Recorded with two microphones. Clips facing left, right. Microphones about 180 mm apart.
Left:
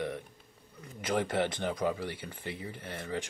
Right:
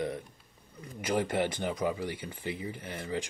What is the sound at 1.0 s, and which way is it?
Speech, 10° right (ahead or behind).